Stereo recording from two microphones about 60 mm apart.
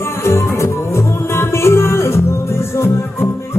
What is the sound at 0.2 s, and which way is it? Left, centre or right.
Music, left.